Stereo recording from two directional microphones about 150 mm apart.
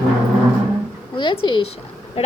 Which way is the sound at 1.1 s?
35° left (ahead or behind).